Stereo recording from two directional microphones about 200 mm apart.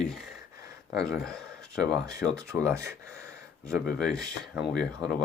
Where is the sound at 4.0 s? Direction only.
Centre (ahead or behind).